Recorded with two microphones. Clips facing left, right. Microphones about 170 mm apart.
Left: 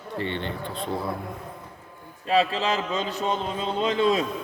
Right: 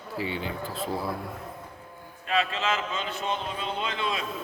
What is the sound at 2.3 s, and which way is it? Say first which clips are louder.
A man's voice: left 5 dB; 35° left (ahead or behind).